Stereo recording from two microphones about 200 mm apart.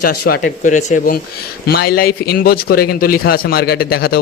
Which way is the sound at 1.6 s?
50° left (ahead or behind).